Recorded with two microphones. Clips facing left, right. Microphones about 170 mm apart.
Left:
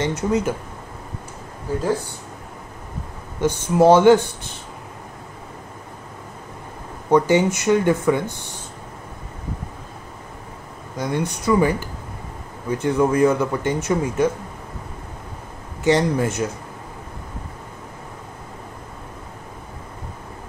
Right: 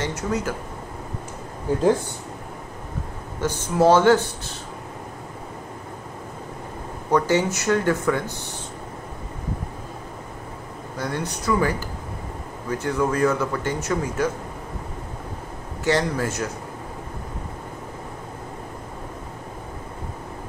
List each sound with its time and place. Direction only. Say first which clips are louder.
0.3 s speech: left 5 dB; 20° left (ahead or behind)
3.3 s speech: left 4 dB; 20° left (ahead or behind)
7.1 s speech: left 4 dB; 15° left (ahead or behind)
11.0 s speech: left 4 dB; 15° left (ahead or behind)
15.8 s speech: left 4 dB; 20° left (ahead or behind)